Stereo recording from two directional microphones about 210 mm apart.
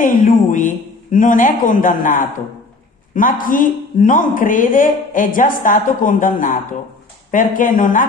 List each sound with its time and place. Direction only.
0.0 s speech: 40° left (ahead or behind)